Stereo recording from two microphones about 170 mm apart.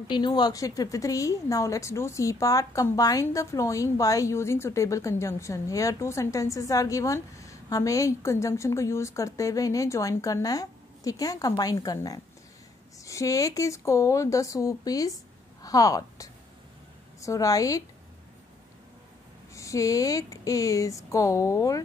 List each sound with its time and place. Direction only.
0.1 s a woman's voice: 25° left (ahead or behind)
19.5 s a woman's voice: 20° left (ahead or behind)